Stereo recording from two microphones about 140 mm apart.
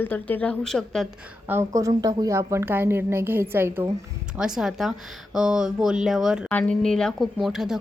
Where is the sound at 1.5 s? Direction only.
20° right (ahead or behind).